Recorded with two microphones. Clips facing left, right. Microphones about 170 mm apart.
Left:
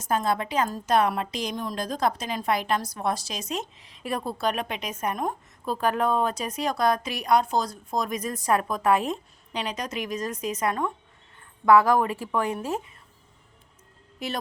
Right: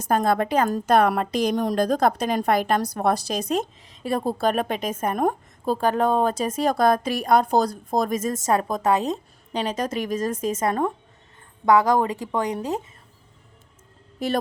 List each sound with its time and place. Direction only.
0.0 s a woman's voice: 55° right (ahead or behind)
4.0 s a woman's voice: 35° right (ahead or behind); by 5.3 s 55° right (ahead or behind)
5.8 s a woman's voice: 30° right (ahead or behind)
8.8 s speech: 25° right (ahead or behind)
9.0 s a woman's voice: 40° right (ahead or behind)
11.6 s speech: 20° right (ahead or behind)